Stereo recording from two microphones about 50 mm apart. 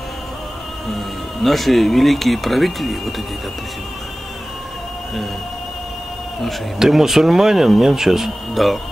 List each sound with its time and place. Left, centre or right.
0.8 s speech: centre
6.8 s speech: centre